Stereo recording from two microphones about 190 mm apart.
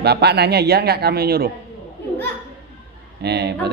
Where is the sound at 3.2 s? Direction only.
60° right (ahead or behind).